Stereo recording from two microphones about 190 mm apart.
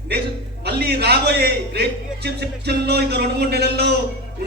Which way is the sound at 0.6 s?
60° right (ahead or behind).